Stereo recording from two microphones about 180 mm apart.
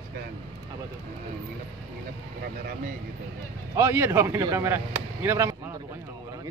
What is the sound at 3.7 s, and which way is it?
Speech, 15° right (ahead or behind).